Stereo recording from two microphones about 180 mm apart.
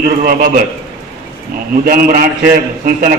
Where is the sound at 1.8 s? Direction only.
50° right (ahead or behind).